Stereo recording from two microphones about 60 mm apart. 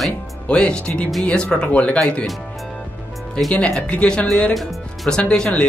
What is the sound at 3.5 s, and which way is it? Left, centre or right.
Speech, centre.